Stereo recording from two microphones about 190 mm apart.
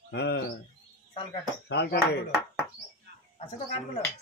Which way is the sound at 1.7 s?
60° left (ahead or behind).